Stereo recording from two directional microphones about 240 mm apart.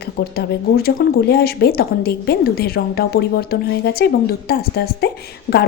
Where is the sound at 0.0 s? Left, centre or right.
Left.